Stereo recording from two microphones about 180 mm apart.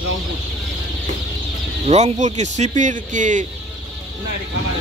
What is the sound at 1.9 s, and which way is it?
Speech, 40° right (ahead or behind).